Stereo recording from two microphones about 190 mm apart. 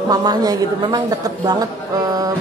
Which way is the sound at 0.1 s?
20° right (ahead or behind).